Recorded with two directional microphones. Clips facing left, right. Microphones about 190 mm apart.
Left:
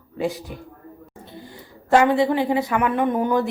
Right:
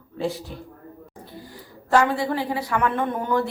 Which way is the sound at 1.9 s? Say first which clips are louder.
Left 4 dB; 20° left (ahead or behind).